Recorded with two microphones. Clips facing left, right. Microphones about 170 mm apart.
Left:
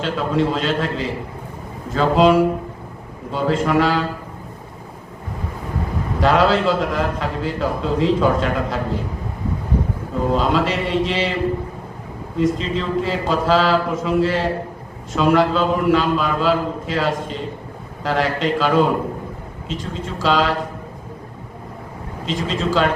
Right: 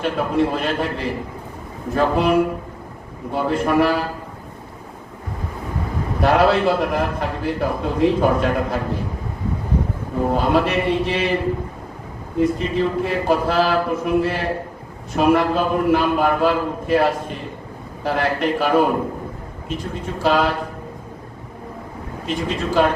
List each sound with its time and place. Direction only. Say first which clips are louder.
0.0 s a man's voice: even; 90° left
6.1 s a man's voice: even; 90° left
10.2 s a man's voice: right 1 dB; 90° left
12.4 s a man's voice: right 1 dB; 90° left
22.3 s a man's voice: left 1 dB; 90° left